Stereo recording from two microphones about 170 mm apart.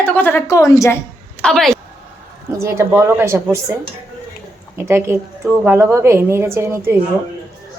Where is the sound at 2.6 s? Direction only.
15° right (ahead or behind).